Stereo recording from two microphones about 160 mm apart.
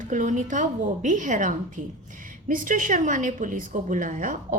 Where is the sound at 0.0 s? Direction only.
55° right (ahead or behind).